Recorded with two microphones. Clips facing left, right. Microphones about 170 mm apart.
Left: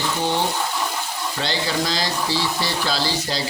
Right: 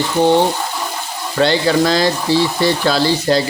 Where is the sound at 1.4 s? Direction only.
60° right (ahead or behind).